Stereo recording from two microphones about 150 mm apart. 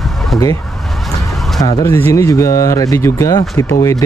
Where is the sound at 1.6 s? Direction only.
25° left (ahead or behind).